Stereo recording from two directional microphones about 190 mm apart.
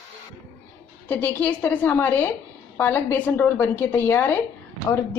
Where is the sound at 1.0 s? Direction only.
10° left (ahead or behind).